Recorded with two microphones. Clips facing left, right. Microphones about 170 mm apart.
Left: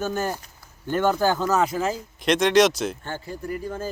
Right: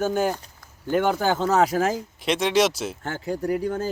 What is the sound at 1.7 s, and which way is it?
Speech, 75° right (ahead or behind).